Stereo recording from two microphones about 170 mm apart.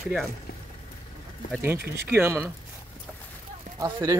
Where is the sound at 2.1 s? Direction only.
15° right (ahead or behind).